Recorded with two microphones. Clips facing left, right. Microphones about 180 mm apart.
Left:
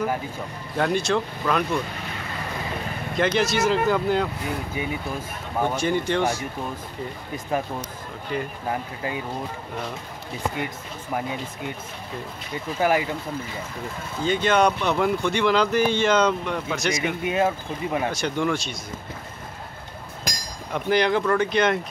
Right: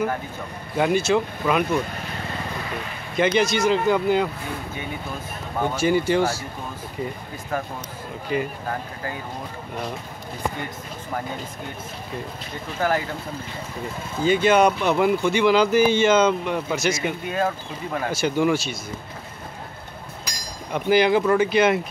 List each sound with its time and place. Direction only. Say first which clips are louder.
0.7 s speech: right 3 dB; 5° right (ahead or behind)
3.2 s speech: right 2 dB; centre (ahead or behind)
5.8 s speech: right 6 dB; 5° right (ahead or behind)
8.3 s speech: right 4 dB; 5° right (ahead or behind)
12.8 s speech: left 2 dB; 15° left (ahead or behind)
14.2 s speech: right 3 dB; 5° right (ahead or behind)
16.9 s speech: left 1 dB; 20° left (ahead or behind)
18.1 s speech: right 4 dB; 5° right (ahead or behind)
20.7 s speech: right 3 dB; 5° right (ahead or behind)